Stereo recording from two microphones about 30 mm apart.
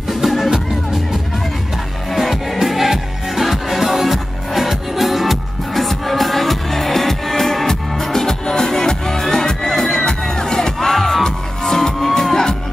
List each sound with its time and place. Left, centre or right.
0.1 s music: centre
2.0 s music: centre